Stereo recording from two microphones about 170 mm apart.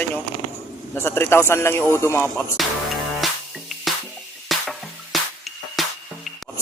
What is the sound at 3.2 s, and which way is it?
Music, centre (ahead or behind).